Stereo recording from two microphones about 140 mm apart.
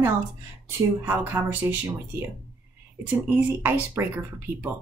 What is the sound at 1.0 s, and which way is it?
Speech, 15° right (ahead or behind).